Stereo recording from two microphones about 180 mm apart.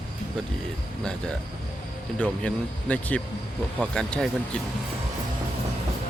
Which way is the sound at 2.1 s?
5° left (ahead or behind).